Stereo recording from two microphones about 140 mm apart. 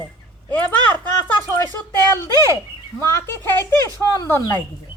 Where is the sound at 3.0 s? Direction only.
20° left (ahead or behind).